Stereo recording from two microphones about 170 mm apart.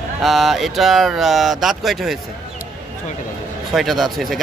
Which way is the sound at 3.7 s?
Centre (ahead or behind).